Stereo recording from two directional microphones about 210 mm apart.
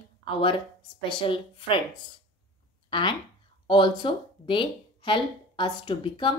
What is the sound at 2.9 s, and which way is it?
Speech, 20° left (ahead or behind).